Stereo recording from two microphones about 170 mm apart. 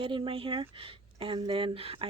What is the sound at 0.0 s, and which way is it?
Speech, 30° right (ahead or behind).